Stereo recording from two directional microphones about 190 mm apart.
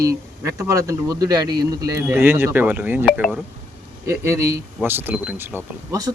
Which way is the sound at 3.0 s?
Centre (ahead or behind).